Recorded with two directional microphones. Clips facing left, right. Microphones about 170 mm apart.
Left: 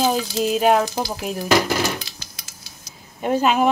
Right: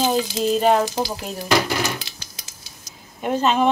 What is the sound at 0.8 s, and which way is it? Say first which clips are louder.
Speech: right 1 dB; 20° right (ahead or behind).